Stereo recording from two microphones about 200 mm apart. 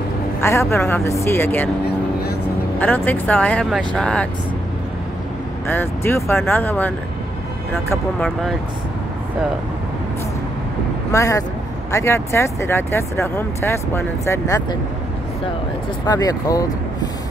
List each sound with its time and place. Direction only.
0.4 s speech: 15° left (ahead or behind)
2.8 s speech: 10° left (ahead or behind)
5.7 s speech: 10° left (ahead or behind)
7.9 s speech: 5° left (ahead or behind)
11.1 s speech: 15° left (ahead or behind)
16.1 s speech: 20° left (ahead or behind)